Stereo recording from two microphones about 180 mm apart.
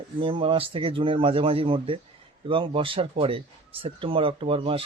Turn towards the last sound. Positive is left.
turn(degrees=-30)  # may be behind; listen again after turning